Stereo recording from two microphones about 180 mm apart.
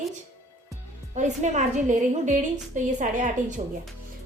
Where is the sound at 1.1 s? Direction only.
40° right (ahead or behind).